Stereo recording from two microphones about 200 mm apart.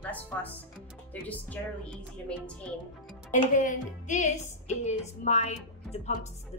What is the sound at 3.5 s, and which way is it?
Speech, 40° left (ahead or behind).